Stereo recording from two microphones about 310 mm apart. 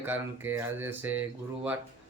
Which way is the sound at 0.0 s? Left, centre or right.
Centre.